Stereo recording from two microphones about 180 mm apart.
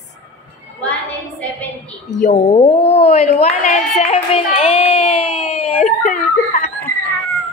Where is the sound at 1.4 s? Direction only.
5° left (ahead or behind).